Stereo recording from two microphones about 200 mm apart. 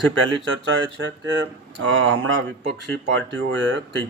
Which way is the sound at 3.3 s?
70° right (ahead or behind).